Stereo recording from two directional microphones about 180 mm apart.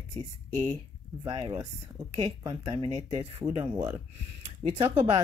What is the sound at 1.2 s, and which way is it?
Speech, 30° right (ahead or behind).